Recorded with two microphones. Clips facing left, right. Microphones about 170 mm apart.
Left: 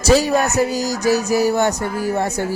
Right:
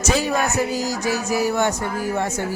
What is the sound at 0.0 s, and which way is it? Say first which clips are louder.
Speech: left 6 dB; 35° left (ahead or behind).